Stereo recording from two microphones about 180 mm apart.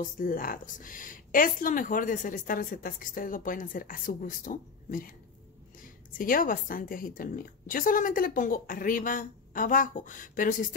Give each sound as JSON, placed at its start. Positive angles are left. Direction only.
{"t": 0.0, "sound": "a woman's voice", "side_deg": 50}
{"t": 6.1, "sound": "a woman's voice", "side_deg": 50}